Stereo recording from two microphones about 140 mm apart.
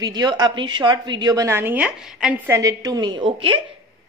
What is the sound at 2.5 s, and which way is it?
A woman's voice, 25° right (ahead or behind).